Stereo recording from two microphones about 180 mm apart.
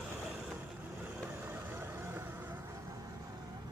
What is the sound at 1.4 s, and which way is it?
Vehicle, 10° right (ahead or behind).